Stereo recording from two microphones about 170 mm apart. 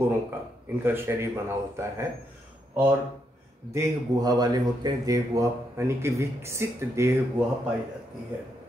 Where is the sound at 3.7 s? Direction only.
20° right (ahead or behind).